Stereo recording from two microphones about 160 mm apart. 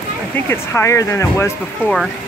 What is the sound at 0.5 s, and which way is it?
Speech, 15° left (ahead or behind).